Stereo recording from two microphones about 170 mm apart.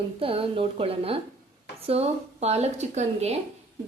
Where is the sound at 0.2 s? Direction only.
35° right (ahead or behind).